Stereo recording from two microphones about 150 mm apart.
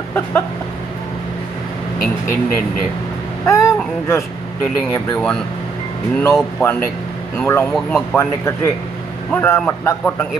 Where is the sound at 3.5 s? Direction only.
20° left (ahead or behind).